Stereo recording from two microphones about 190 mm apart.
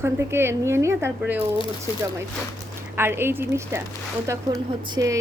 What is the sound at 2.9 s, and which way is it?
A woman's voice, 10° right (ahead or behind).